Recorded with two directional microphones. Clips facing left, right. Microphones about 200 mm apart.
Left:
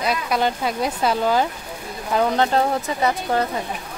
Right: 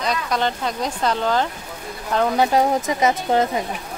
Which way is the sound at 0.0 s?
5° left (ahead or behind).